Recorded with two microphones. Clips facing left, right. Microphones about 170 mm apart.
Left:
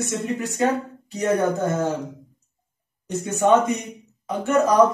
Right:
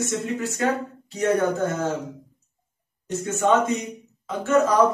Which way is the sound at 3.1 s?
15° left (ahead or behind).